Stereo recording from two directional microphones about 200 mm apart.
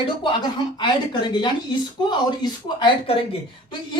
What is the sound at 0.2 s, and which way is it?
Speech, 20° left (ahead or behind).